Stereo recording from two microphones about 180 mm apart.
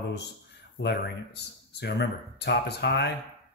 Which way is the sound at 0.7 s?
70° left (ahead or behind).